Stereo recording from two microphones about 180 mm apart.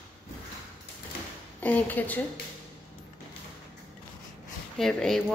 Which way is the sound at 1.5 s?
10° left (ahead or behind).